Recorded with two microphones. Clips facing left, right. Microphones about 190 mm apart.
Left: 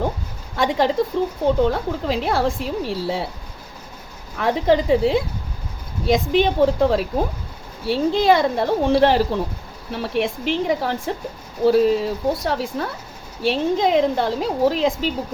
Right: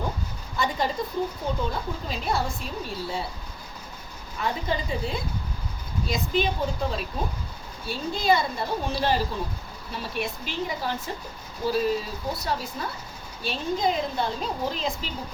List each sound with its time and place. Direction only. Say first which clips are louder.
0.5 s a woman's voice: left 8 dB; 90° left
4.4 s a woman's voice: left 11 dB; 90° left; by 7.1 s 70° left (ahead or behind)
7.9 s a woman's voice: left 8 dB; 85° left